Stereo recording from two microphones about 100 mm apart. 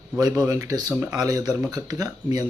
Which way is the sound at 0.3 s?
30° right (ahead or behind).